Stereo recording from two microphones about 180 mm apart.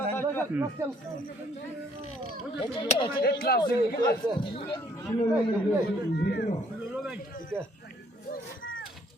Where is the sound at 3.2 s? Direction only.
60° left (ahead or behind).